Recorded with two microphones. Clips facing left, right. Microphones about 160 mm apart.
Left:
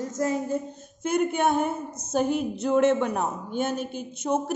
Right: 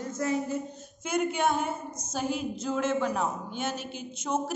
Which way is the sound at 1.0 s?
55° left (ahead or behind).